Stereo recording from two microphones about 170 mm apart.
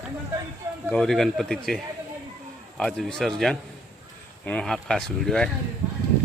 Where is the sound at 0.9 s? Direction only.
Centre (ahead or behind).